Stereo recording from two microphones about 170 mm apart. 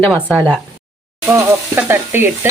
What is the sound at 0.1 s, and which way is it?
Speech, 5° right (ahead or behind).